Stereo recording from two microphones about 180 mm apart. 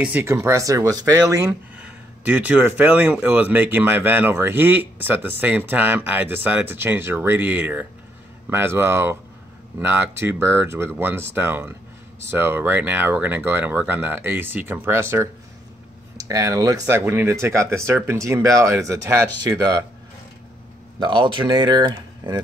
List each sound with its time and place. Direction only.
0.0 s speech: 10° right (ahead or behind)
1.8 s speech: 10° right (ahead or behind)
21.0 s speech: 25° right (ahead or behind)